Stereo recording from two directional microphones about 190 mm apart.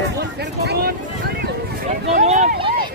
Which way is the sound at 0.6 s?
60° right (ahead or behind).